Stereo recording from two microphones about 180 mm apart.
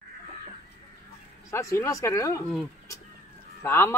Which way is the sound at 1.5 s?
15° left (ahead or behind).